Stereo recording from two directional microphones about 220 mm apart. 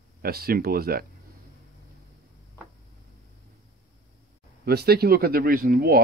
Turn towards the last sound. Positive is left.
turn(degrees=-45)  # may be behind; listen again after turning